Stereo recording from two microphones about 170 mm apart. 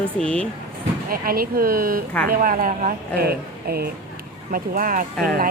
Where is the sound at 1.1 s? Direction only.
60° right (ahead or behind).